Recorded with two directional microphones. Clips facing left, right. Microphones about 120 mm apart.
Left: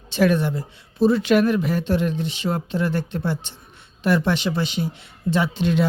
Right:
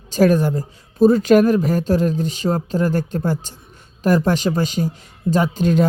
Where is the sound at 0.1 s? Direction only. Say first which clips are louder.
Right 4 dB; 40° right (ahead or behind).